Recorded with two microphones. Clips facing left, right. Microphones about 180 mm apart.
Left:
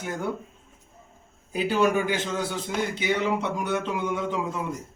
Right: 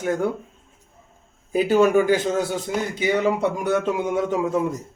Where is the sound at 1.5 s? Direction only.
45° right (ahead or behind).